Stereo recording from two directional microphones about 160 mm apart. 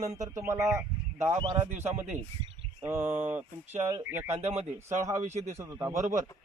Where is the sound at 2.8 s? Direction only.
15° right (ahead or behind).